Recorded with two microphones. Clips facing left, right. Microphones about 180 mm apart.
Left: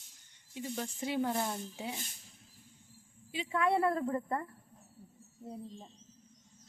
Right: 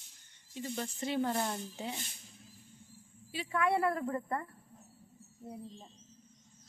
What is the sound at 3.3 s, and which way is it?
A woman's voice, 20° left (ahead or behind).